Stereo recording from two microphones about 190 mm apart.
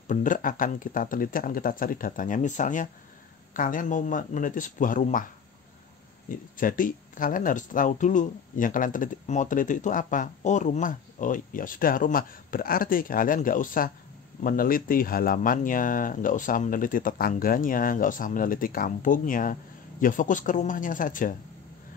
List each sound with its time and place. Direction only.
0.1 s speech: 45° left (ahead or behind)
6.2 s speech: 45° left (ahead or behind)